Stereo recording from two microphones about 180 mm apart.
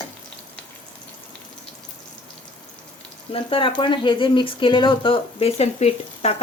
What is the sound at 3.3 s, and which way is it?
Speech, 30° left (ahead or behind).